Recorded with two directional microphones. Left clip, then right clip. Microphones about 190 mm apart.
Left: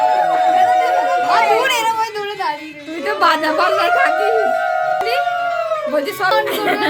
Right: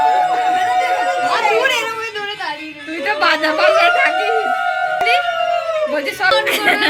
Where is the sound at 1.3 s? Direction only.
75° left (ahead or behind).